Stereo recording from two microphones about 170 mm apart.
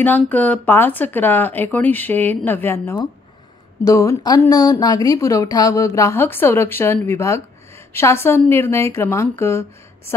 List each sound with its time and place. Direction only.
0.0 s a woman's voice: 10° left (ahead or behind)